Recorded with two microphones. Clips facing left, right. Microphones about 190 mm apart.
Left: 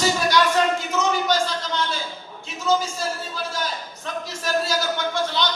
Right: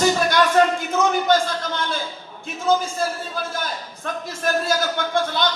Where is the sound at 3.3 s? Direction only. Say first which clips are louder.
Right 1 dB; 50° right (ahead or behind).